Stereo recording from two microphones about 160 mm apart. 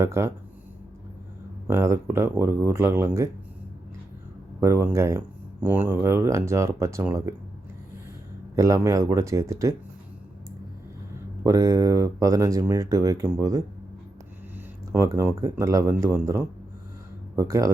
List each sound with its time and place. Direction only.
0.0 s speech: 15° right (ahead or behind)
1.6 s speech: 15° right (ahead or behind)
4.6 s speech: 15° right (ahead or behind)
8.5 s speech: 20° right (ahead or behind)
11.4 s speech: 20° right (ahead or behind)